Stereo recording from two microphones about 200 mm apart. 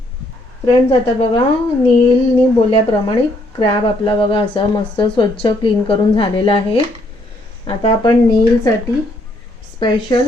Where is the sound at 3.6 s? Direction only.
25° left (ahead or behind).